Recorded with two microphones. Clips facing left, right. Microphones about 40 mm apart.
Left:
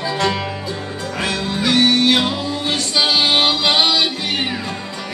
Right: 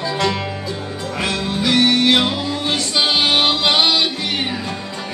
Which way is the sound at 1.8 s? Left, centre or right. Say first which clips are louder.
Even; right.